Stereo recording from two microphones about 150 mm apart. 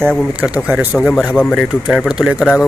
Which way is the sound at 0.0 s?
5° left (ahead or behind).